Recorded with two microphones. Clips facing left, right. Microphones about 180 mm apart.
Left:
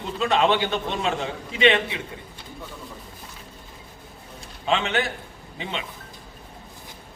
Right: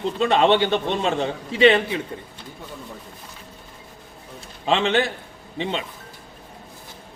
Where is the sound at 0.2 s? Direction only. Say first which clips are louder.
Right 3 dB; 30° right (ahead or behind).